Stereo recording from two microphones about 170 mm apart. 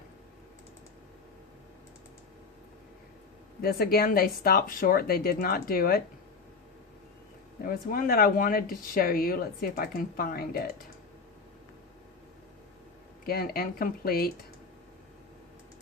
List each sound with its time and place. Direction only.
3.6 s speech: 60° left (ahead or behind)
7.6 s speech: 55° left (ahead or behind)
13.2 s speech: 60° left (ahead or behind)